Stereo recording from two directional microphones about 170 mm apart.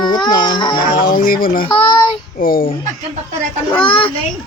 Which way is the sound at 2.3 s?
60° left (ahead or behind).